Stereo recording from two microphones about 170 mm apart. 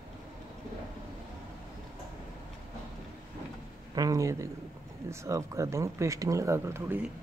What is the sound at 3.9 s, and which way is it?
Speech, 20° right (ahead or behind).